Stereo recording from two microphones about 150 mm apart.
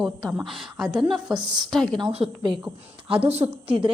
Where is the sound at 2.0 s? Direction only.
30° right (ahead or behind).